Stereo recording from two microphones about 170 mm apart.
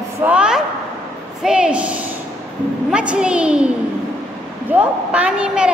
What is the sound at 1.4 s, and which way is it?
A woman's voice, 5° right (ahead or behind).